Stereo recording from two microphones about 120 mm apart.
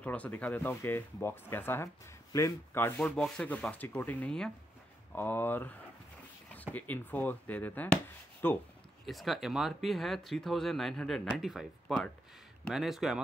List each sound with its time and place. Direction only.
0.0 s speech: 10° left (ahead or behind)
9.0 s speech: centre (ahead or behind)